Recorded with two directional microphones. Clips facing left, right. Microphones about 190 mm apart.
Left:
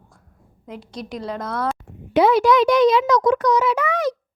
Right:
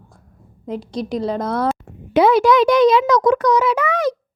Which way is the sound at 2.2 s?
90° right.